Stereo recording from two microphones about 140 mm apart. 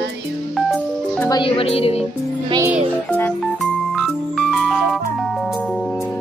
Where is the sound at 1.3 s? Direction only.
35° left (ahead or behind).